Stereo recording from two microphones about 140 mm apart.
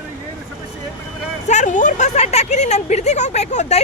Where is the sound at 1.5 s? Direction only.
60° left (ahead or behind).